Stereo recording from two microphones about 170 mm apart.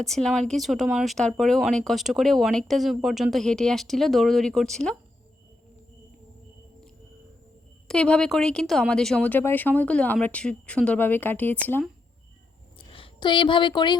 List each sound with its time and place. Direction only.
0.0 s speech: centre (ahead or behind)
7.9 s speech: 5° left (ahead or behind)
12.7 s a sound: 30° left (ahead or behind)